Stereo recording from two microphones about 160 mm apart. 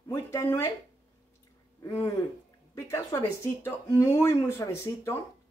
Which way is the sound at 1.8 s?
15° left (ahead or behind).